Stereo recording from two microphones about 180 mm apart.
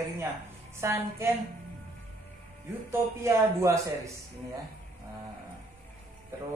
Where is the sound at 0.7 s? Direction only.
15° right (ahead or behind).